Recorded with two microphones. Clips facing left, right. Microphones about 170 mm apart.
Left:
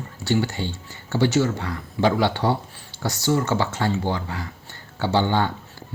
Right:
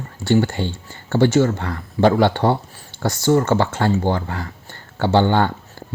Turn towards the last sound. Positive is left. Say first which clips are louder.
# right 5 dB
turn(degrees=-55)  # may be behind; listen again after turning